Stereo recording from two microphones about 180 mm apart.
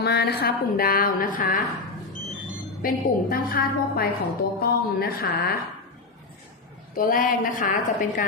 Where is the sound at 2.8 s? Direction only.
50° left (ahead or behind).